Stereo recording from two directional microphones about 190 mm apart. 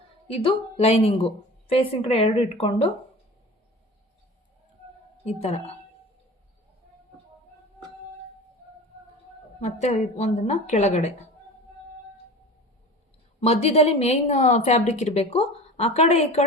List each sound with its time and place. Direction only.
0.3 s a woman's voice: 30° left (ahead or behind)
5.2 s a woman's voice: 35° left (ahead or behind)
9.6 s a woman's voice: 35° left (ahead or behind)
13.4 s a woman's voice: 35° left (ahead or behind)